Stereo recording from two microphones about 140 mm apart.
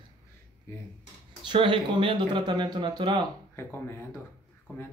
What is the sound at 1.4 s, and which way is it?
Speech, 35° right (ahead or behind).